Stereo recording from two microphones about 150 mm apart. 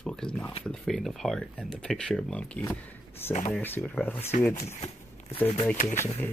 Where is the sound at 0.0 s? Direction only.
5° left (ahead or behind).